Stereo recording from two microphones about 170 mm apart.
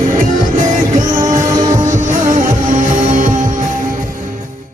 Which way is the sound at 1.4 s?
20° right (ahead or behind).